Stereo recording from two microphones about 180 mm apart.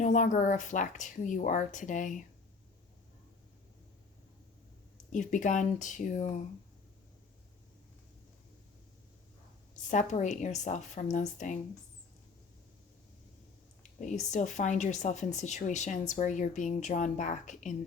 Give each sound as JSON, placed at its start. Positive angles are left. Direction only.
{"t": 0.0, "sound": "speech", "side_deg": 45}
{"t": 5.1, "sound": "speech", "side_deg": 45}
{"t": 9.9, "sound": "speech", "side_deg": 45}
{"t": 14.0, "sound": "speech", "side_deg": 40}